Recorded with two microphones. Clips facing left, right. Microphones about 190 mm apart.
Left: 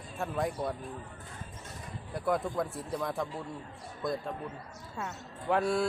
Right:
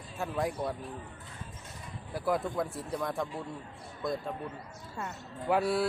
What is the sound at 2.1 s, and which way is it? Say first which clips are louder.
A man's voice: even; centre (ahead or behind).